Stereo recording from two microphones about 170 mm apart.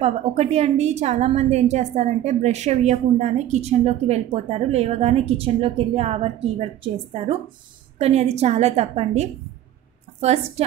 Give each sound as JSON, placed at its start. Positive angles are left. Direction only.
{"t": 0.0, "sound": "a woman's voice", "side_deg": -40}